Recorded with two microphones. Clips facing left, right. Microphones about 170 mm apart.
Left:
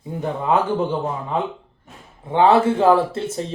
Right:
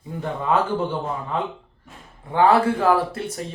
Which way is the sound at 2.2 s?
20° left (ahead or behind).